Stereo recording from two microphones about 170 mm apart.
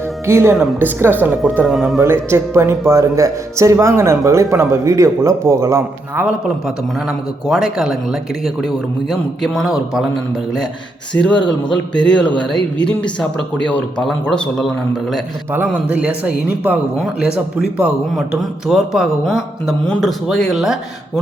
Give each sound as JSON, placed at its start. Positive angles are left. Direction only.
{"t": 0.3, "sound": "speech", "side_deg": -15}
{"t": 1.6, "sound": "speech", "side_deg": 0}
{"t": 2.3, "sound": "speech", "side_deg": -15}
{"t": 7.4, "sound": "speech", "side_deg": 0}
{"t": 11.1, "sound": "speech", "side_deg": 5}
{"t": 15.5, "sound": "speech", "side_deg": -10}